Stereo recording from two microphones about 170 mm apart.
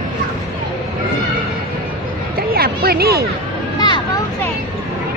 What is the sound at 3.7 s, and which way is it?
Vehicle, 25° left (ahead or behind).